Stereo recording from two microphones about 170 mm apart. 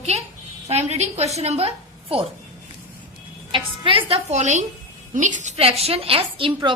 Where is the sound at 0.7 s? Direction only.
40° right (ahead or behind).